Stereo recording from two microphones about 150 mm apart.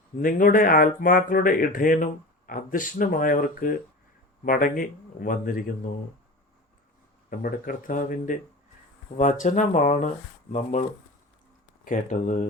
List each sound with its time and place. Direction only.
0.2 s speech: 65° left (ahead or behind)
7.3 s speech: 65° left (ahead or behind); by 10.8 s 50° left (ahead or behind)
11.9 s speech: 55° left (ahead or behind)